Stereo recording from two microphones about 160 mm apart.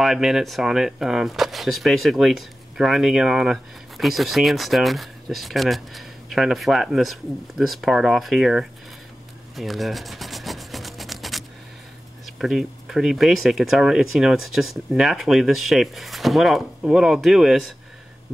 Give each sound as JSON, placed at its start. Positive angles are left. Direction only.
{"t": 0.0, "sound": "speech", "side_deg": 0}
{"t": 9.6, "sound": "rub", "side_deg": 0}
{"t": 12.4, "sound": "speech", "side_deg": 0}